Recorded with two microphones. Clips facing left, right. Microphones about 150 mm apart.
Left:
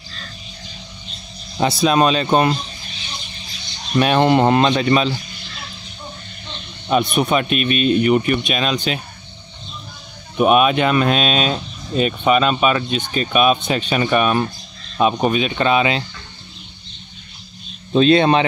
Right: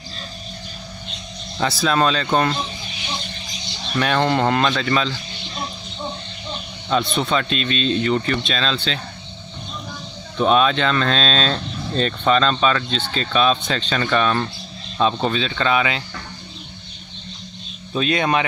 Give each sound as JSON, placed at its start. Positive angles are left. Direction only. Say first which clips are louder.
{"t": 1.6, "sound": "speech", "louder": "left 4 dB", "side_deg": 20}
{"t": 3.9, "sound": "speech", "louder": "left 5 dB", "side_deg": 20}
{"t": 7.2, "sound": "speech", "louder": "left 4 dB", "side_deg": 20}
{"t": 10.3, "sound": "speech", "louder": "left 3 dB", "side_deg": 15}
{"t": 11.6, "sound": "vehicle", "louder": "right 7 dB", "side_deg": -80}
{"t": 11.9, "sound": "speech", "louder": "left 2 dB", "side_deg": 10}
{"t": 17.9, "sound": "speech", "louder": "left 7 dB", "side_deg": 30}